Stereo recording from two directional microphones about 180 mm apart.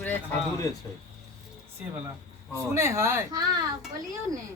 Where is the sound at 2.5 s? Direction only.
15° right (ahead or behind).